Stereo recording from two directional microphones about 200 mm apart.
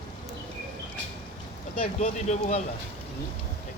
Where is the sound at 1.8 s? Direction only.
35° left (ahead or behind).